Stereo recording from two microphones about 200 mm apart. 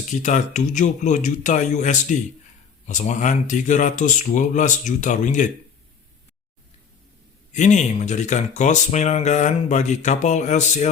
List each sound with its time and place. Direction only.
0.1 s speech: 40° left (ahead or behind)
7.5 s speech: 35° left (ahead or behind)